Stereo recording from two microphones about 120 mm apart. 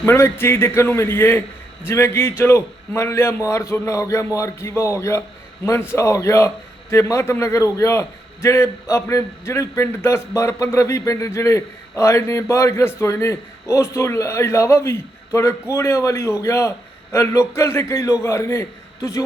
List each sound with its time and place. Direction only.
0.0 s a man's voice: 20° left (ahead or behind)